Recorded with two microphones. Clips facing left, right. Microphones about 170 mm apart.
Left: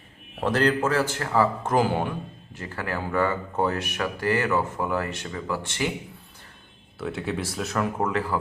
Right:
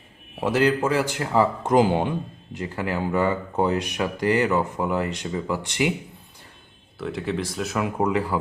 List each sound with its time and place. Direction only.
0.3 s speech: 10° right (ahead or behind)
7.0 s speech: centre (ahead or behind)
7.8 s speech: 15° right (ahead or behind)